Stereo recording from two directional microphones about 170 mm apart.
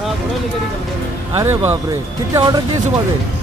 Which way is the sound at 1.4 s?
15° right (ahead or behind).